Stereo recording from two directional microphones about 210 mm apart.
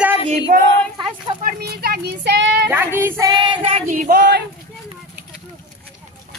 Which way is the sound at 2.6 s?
10° right (ahead or behind).